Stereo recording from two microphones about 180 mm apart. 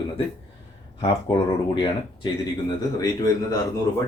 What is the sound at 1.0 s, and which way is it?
Speech, 25° left (ahead or behind).